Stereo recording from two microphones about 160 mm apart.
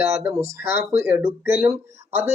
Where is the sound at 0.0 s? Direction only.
15° right (ahead or behind).